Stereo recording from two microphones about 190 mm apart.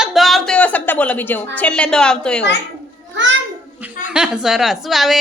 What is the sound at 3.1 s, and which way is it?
Speech, 70° right (ahead or behind).